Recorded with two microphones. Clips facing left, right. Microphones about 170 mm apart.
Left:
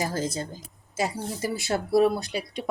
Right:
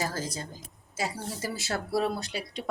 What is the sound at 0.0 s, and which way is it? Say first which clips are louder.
Speech: left 5 dB; 20° left (ahead or behind).